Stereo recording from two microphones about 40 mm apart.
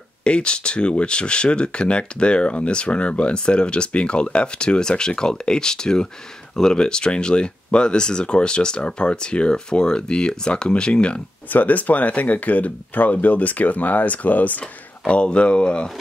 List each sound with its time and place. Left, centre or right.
0.2 s speech: left
11.4 s speech: left
14.6 s speech: left